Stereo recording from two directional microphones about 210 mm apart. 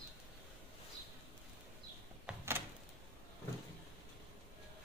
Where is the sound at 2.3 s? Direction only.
5° right (ahead or behind).